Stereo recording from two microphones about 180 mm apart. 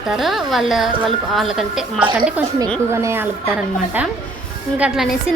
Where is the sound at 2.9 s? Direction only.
15° right (ahead or behind).